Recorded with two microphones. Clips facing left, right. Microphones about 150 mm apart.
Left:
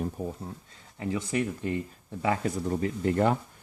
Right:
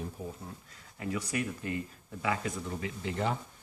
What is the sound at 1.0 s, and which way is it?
Speech, 25° left (ahead or behind).